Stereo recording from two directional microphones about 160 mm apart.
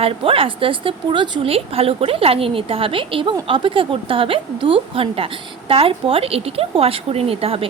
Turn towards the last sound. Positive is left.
turn(degrees=-35)  # may be behind; listen again after turning